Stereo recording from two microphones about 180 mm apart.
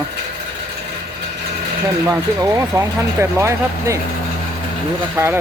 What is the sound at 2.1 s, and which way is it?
Speech, 15° right (ahead or behind).